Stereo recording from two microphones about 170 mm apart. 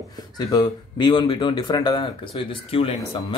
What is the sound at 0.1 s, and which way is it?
Speech, 25° left (ahead or behind).